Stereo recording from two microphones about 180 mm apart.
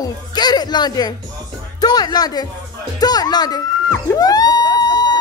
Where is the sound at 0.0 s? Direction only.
20° left (ahead or behind).